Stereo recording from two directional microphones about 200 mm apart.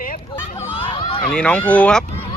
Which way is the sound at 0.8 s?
25° left (ahead or behind).